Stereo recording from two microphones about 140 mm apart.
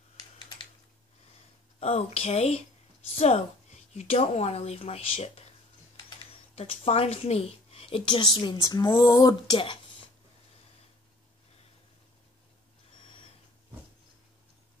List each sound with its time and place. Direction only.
1.8 s speech: 50° left (ahead or behind)
6.5 s speech: 45° left (ahead or behind)